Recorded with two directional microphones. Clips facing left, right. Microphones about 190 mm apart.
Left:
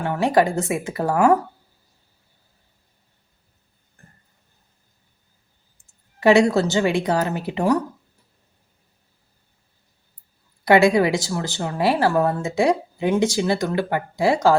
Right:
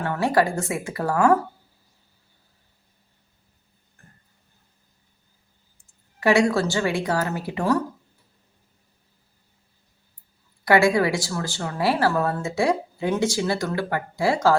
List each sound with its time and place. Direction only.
0.0 s speech: 15° left (ahead or behind)
6.1 s speech: 20° left (ahead or behind)
10.7 s speech: 20° left (ahead or behind)